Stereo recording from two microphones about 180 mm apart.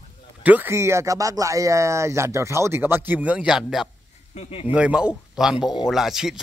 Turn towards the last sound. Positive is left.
turn(degrees=0)  # may be behind; listen again after turning